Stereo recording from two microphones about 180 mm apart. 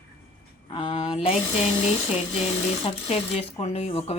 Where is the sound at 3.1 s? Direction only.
35° left (ahead or behind).